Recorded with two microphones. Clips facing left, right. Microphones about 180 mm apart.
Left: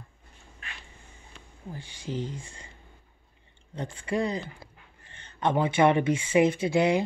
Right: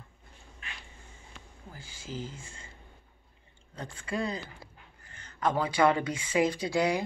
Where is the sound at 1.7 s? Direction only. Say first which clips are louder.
Left 6 dB; 30° left (ahead or behind).